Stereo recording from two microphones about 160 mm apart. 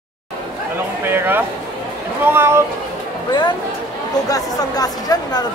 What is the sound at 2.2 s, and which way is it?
Speech, 15° right (ahead or behind).